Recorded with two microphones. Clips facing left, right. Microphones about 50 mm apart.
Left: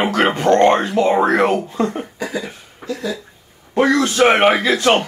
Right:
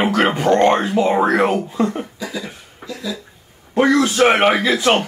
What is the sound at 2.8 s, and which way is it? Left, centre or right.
Speech, left.